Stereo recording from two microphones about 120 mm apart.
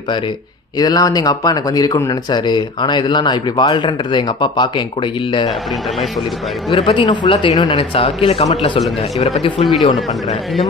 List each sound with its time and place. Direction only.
0.7 s speech: 35° left (ahead or behind)
6.7 s speech: 50° left (ahead or behind)